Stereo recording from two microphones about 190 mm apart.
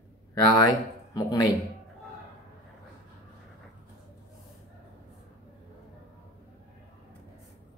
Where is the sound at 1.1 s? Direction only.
20° left (ahead or behind).